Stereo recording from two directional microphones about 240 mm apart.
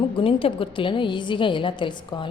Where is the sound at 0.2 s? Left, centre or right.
Left.